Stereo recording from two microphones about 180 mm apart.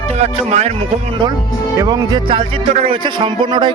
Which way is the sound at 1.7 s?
20° right (ahead or behind).